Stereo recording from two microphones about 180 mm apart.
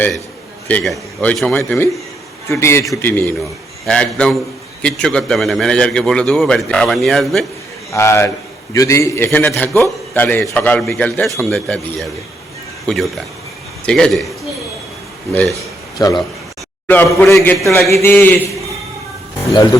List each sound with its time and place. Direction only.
0.7 s a man's voice: 10° left (ahead or behind)
2.5 s a man's voice: 15° left (ahead or behind)
7.9 s a man's voice: 15° left (ahead or behind)
16.0 s a man's voice: 20° left (ahead or behind)